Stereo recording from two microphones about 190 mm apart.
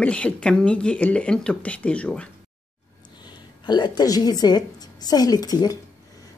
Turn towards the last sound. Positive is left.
turn(degrees=20)  # may be behind; listen again after turning